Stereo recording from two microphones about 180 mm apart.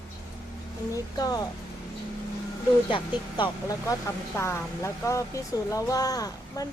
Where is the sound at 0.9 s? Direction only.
20° left (ahead or behind).